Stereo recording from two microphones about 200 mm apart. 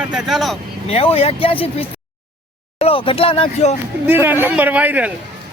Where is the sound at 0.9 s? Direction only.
30° left (ahead or behind).